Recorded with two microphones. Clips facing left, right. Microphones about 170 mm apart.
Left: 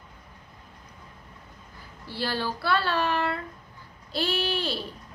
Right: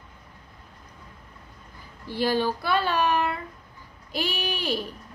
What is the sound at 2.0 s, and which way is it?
A woman's voice, 15° right (ahead or behind).